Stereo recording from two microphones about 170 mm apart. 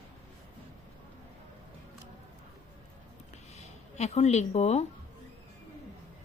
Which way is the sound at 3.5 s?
40° left (ahead or behind).